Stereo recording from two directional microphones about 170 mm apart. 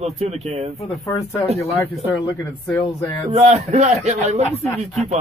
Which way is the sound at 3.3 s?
40° right (ahead or behind).